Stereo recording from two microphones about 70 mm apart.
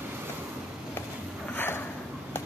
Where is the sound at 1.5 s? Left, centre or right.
Left.